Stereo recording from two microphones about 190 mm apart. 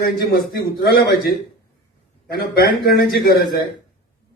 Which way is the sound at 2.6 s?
55° left (ahead or behind).